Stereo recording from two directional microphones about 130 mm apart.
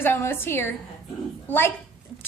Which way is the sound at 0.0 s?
15° left (ahead or behind).